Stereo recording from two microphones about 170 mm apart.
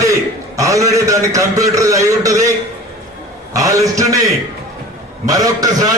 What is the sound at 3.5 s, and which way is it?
A man's voice, 20° right (ahead or behind).